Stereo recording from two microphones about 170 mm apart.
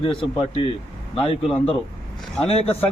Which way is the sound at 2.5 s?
35° left (ahead or behind).